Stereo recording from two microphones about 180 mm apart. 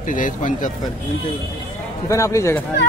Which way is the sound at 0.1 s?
45° left (ahead or behind).